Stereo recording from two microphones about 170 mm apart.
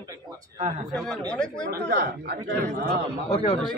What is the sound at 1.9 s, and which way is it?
Speech, 60° right (ahead or behind).